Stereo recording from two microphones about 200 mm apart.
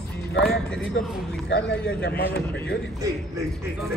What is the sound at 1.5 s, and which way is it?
A man's voice, 60° left (ahead or behind).